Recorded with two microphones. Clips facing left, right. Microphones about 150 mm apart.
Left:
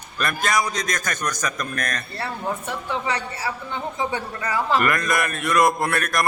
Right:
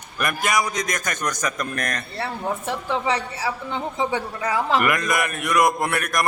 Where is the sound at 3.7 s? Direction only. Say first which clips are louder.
Right 2 dB; 25° right (ahead or behind).